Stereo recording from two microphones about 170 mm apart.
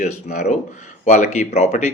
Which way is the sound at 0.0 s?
45° left (ahead or behind).